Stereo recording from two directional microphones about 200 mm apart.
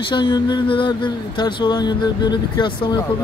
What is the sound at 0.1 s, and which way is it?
Speech, 25° left (ahead or behind).